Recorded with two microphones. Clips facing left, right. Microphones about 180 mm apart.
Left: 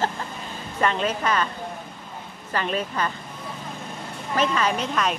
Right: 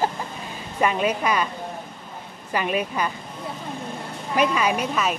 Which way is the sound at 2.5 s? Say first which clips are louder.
Right 2 dB; 10° right (ahead or behind).